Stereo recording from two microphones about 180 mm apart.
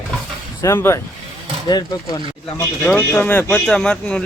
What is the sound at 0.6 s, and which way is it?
Speech, 15° left (ahead or behind).